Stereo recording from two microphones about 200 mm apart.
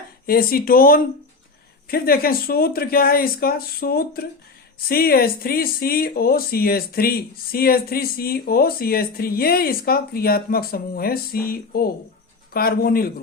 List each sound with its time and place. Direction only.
0.3 s speech: 45° left (ahead or behind)